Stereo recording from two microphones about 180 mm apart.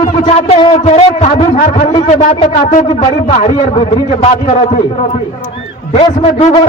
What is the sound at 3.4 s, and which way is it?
Speech, 30° left (ahead or behind).